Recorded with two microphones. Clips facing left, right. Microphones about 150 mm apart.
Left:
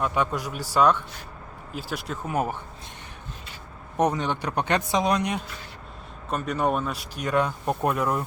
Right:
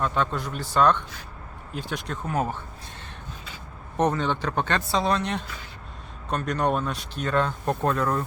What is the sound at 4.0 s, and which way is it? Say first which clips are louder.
Speech: even; 10° left (ahead or behind).